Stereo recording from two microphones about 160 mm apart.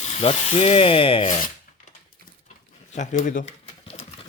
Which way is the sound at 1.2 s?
50° left (ahead or behind).